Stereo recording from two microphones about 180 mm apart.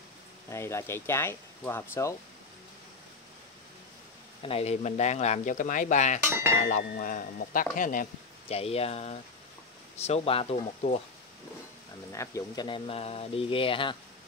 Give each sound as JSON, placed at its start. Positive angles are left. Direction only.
{"t": 0.5, "sound": "speech", "side_deg": 15}
{"t": 4.4, "sound": "speech", "side_deg": 30}
{"t": 8.5, "sound": "speech", "side_deg": 35}
{"t": 12.1, "sound": "speech", "side_deg": 15}